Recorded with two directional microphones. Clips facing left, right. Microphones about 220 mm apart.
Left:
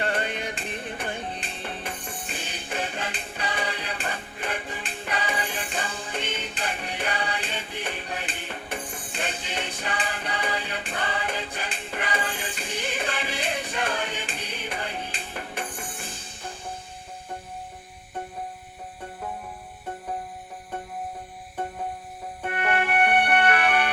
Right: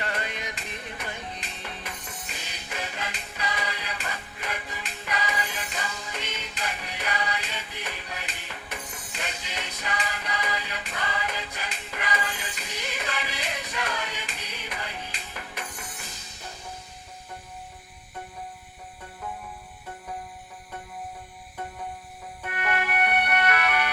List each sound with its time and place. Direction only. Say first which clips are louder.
0.0 s music: left 5 dB; 30° left (ahead or behind)
22.4 s music: left 4 dB; 30° left (ahead or behind)